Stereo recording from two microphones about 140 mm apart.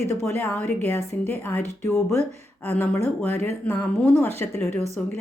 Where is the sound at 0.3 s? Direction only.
15° left (ahead or behind).